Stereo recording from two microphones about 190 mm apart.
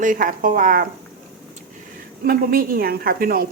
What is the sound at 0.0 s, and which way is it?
Speech, 45° right (ahead or behind).